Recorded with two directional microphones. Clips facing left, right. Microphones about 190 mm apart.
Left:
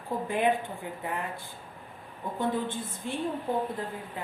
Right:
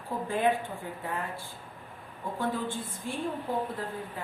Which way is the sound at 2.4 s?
20° left (ahead or behind).